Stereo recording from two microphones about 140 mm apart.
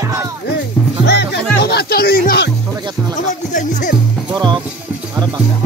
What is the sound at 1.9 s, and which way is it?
Music, 90° left.